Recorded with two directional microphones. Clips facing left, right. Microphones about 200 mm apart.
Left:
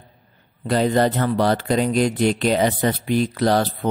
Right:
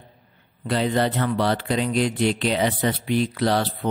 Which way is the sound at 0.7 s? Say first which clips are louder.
Left 4 dB; 45° left (ahead or behind).